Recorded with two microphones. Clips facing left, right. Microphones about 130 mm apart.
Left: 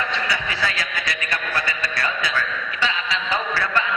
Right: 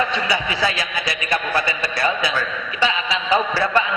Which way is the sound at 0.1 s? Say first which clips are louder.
Right 4 dB; 15° right (ahead or behind).